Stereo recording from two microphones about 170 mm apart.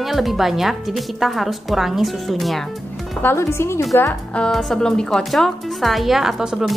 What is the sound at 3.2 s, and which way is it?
Speech, 15° left (ahead or behind).